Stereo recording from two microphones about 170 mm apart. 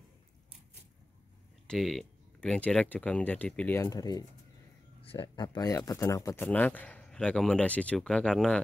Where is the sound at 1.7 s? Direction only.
Centre (ahead or behind).